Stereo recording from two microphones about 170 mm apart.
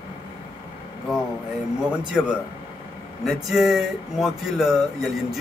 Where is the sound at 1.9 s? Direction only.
5° right (ahead or behind).